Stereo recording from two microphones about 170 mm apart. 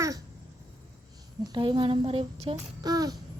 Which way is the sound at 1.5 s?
25° right (ahead or behind).